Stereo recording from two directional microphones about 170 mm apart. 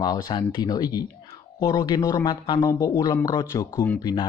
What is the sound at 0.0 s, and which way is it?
Speech, 25° left (ahead or behind).